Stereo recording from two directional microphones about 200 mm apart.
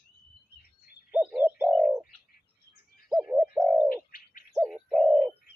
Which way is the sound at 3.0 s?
5° right (ahead or behind).